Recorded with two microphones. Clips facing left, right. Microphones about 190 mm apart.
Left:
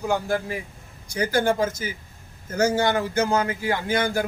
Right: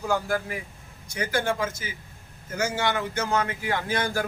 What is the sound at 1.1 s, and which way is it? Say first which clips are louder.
Speech: left 5 dB; 35° left (ahead or behind).